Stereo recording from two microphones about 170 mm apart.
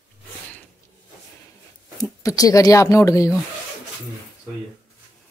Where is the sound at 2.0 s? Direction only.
20° left (ahead or behind).